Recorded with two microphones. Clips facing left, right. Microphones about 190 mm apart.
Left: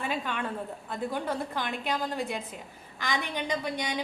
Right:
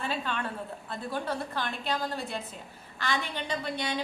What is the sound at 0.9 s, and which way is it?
A woman's voice, 15° left (ahead or behind).